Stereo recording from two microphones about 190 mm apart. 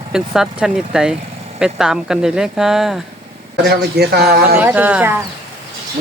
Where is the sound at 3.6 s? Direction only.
60° right (ahead or behind).